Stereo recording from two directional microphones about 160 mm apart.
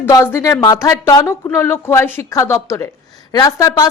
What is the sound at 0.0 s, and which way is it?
A woman's voice, 15° left (ahead or behind).